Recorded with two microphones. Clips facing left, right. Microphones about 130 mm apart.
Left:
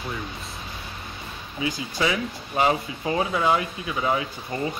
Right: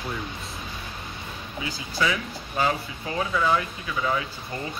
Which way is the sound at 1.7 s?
25° left (ahead or behind).